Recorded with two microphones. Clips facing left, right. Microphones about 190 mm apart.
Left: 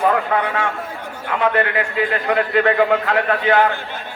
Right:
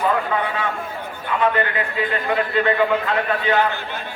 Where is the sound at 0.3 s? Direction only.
75° left (ahead or behind).